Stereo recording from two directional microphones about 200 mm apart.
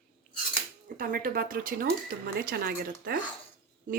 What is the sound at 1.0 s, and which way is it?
A woman's voice, 45° right (ahead or behind).